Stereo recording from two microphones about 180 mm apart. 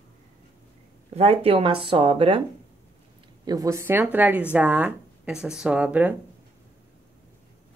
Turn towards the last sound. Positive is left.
turn(degrees=-10)  # may be behind; listen again after turning